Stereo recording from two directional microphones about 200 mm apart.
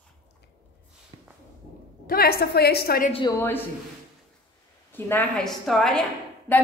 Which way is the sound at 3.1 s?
15° left (ahead or behind).